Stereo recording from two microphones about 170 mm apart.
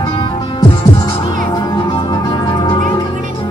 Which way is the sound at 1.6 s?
25° left (ahead or behind).